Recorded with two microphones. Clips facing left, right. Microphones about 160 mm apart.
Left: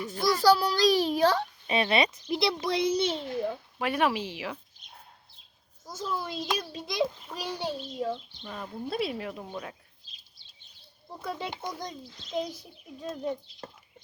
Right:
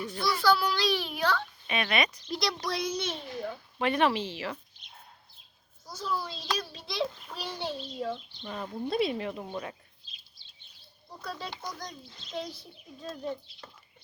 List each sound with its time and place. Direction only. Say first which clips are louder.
0.1 s a child's voice: left 4 dB; 45° left (ahead or behind)
2.0 s a child's voice: left 5 dB; 10° left (ahead or behind)
2.4 s a child's voice: left 5 dB; 25° left (ahead or behind)
3.8 s a child's voice: right 1 dB; 5° left (ahead or behind)
6.0 s a child's voice: left 1 dB; 20° left (ahead or behind)
8.4 s speech: right 2 dB; 5° right (ahead or behind)
11.2 s a child's voice: left 4 dB; 20° left (ahead or behind)
13.1 s a child's voice: left 3 dB; 15° left (ahead or behind)
13.6 s speech: left 6 dB; 45° left (ahead or behind)